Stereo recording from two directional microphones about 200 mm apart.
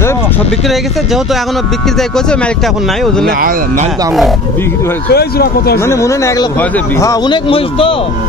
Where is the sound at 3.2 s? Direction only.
45° right (ahead or behind).